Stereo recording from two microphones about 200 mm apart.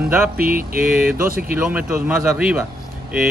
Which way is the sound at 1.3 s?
45° right (ahead or behind).